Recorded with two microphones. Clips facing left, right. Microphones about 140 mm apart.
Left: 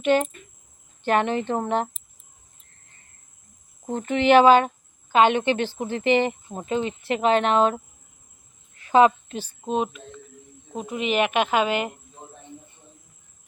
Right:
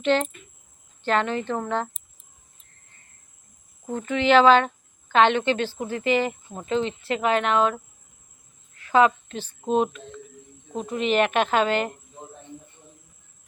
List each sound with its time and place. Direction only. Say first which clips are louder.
0.0 s a woman's voice: left 2 dB; 10° left (ahead or behind)
3.8 s a woman's voice: left 2 dB; 25° left (ahead or behind)
8.7 s a sound: left 2 dB; 20° left (ahead or behind)
9.6 s speech: right 3 dB; centre (ahead or behind)